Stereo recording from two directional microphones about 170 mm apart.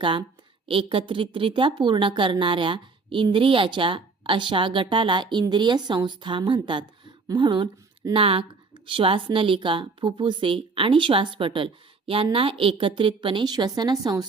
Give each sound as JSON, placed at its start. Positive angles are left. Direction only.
{"t": 0.0, "sound": "speech", "side_deg": -30}